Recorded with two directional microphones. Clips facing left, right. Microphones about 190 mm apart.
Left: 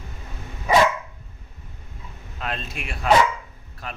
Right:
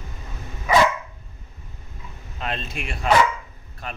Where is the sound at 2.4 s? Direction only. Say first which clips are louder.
Right 1 dB; centre (ahead or behind).